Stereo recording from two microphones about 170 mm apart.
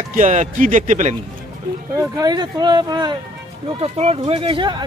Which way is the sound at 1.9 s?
20° right (ahead or behind).